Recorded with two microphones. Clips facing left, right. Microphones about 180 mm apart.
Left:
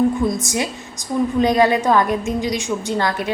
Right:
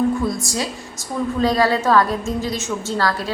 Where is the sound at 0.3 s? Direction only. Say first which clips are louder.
Left 2 dB; 20° left (ahead or behind).